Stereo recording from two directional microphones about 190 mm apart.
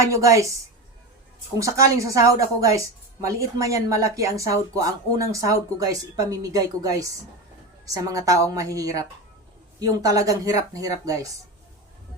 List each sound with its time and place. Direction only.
0.0 s speech: 15° right (ahead or behind)
1.5 s speech: 15° right (ahead or behind)